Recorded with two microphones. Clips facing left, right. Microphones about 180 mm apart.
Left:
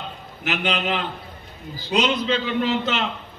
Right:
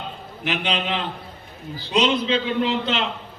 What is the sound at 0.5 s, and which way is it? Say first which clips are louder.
A man's voice: left 1 dB; 45° left (ahead or behind).